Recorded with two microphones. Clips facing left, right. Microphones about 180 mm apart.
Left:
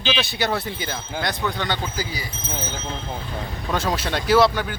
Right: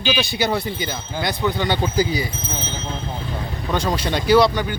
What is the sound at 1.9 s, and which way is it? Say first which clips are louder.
Speech: right 9 dB; 20° right (ahead or behind).